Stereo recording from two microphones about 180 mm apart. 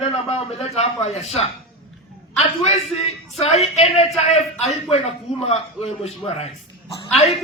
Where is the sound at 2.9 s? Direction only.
35° left (ahead or behind).